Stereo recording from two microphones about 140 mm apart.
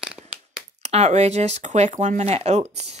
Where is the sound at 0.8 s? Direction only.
55° right (ahead or behind).